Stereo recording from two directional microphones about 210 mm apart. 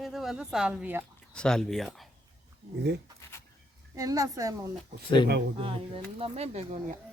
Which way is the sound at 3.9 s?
15° right (ahead or behind).